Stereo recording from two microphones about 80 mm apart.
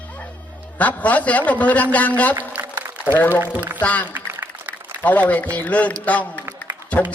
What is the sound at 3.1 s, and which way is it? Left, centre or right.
A man's voice, left.